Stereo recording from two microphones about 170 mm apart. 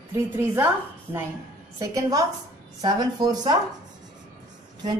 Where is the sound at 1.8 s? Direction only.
20° right (ahead or behind).